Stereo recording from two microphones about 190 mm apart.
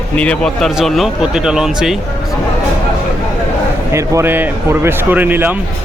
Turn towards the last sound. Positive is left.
turn(degrees=-10)  # may be behind; listen again after turning